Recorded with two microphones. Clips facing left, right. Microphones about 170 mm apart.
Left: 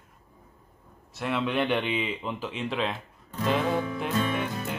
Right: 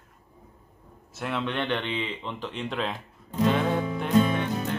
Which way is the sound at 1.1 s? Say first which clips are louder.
Left 2 dB; centre (ahead or behind).